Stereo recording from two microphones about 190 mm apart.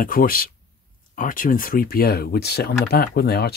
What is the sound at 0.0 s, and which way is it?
Speech, 50° left (ahead or behind).